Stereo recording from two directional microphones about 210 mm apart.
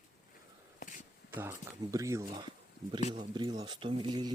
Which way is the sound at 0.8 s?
40° left (ahead or behind).